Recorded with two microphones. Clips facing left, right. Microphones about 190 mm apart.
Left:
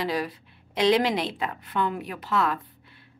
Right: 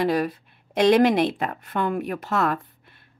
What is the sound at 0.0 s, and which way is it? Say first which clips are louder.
A woman's voice: right 6 dB; 50° right (ahead or behind).